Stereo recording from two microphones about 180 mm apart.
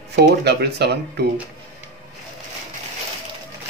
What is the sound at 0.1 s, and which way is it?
Speech, 65° right (ahead or behind).